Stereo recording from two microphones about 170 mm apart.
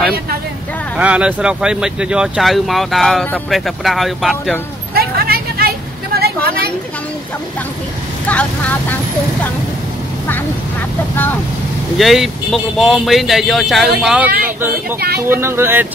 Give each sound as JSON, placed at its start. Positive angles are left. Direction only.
{"t": 0.9, "sound": "speech", "side_deg": -5}
{"t": 4.9, "sound": "vehicle", "side_deg": -65}
{"t": 6.1, "sound": "a sound", "side_deg": -70}
{"t": 8.3, "sound": "speech", "side_deg": 10}
{"t": 12.0, "sound": "speech", "side_deg": 0}